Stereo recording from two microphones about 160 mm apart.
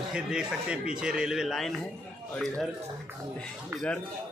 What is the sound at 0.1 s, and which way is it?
Speech, 5° right (ahead or behind).